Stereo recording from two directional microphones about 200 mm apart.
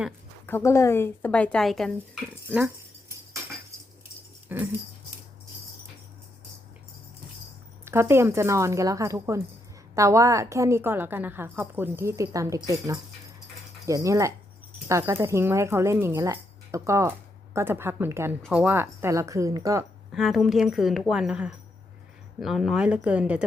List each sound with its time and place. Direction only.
0.4 s speech: 15° left (ahead or behind)
4.4 s dog: 10° right (ahead or behind)
7.9 s speech: 10° right (ahead or behind)
20.1 s a woman's voice: centre (ahead or behind)